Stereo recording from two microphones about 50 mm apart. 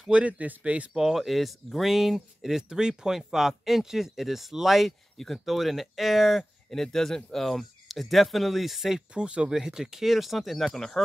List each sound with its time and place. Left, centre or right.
0.1 s speech: right
0.9 s speech: centre
6.7 s speech: centre
9.1 s speech: centre